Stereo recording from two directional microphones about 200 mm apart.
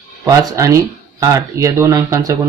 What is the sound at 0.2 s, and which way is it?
Speech, 15° right (ahead or behind).